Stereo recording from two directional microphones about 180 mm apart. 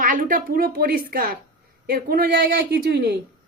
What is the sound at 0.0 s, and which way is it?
A woman's voice, 50° right (ahead or behind).